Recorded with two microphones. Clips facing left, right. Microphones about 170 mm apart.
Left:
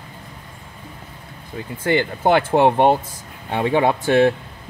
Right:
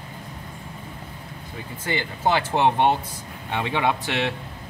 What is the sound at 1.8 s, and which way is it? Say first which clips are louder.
Speech: left 7 dB; 55° left (ahead or behind).